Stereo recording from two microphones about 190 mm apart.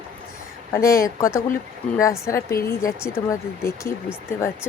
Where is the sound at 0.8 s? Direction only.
50° left (ahead or behind).